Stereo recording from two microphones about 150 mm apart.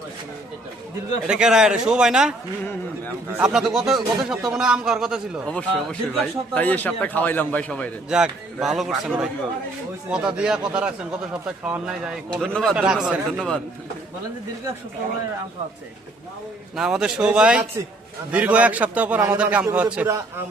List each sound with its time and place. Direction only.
1.3 s speech: 5° right (ahead or behind)
3.3 s speech: 5° right (ahead or behind)
5.5 s a man's voice: 5° left (ahead or behind)
8.1 s speech: 5° right (ahead or behind)
16.7 s speech: 5° right (ahead or behind)
20.1 s a man's voice: 20° right (ahead or behind)